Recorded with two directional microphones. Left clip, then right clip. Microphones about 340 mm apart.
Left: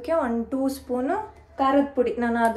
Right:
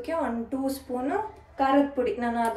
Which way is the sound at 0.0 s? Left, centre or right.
Centre.